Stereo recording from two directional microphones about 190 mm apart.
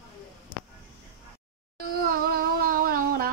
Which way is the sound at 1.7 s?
50° right (ahead or behind).